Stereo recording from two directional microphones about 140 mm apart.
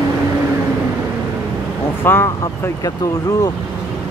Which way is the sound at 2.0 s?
15° left (ahead or behind).